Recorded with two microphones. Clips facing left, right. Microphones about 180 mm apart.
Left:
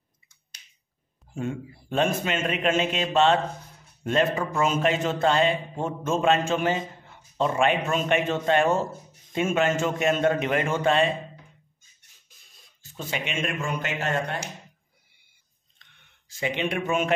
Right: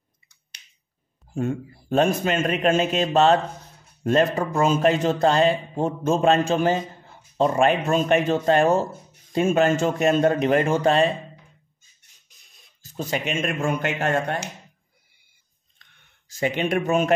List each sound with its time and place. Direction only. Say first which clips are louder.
0.5 s finger snapping: right 2 dB; 65° right (ahead or behind)
1.3 s a man's voice: right 5 dB; 40° right (ahead or behind)
12.8 s speech: right 5 dB; 40° right (ahead or behind)
15.8 s a sound: right 1 dB; 45° right (ahead or behind)